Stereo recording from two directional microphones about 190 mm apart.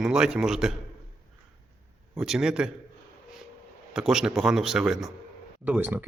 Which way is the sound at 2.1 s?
Centre (ahead or behind).